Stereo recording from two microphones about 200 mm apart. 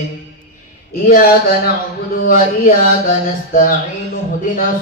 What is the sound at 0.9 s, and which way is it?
Speech, 45° left (ahead or behind).